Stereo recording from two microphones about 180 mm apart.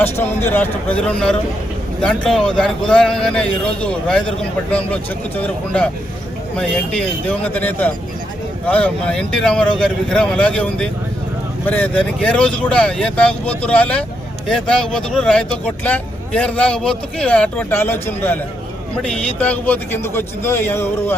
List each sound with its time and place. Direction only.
0.0 s speech: 10° left (ahead or behind)